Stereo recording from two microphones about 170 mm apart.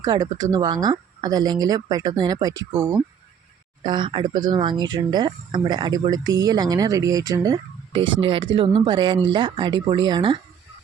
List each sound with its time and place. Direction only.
0.0 s speech: 20° right (ahead or behind)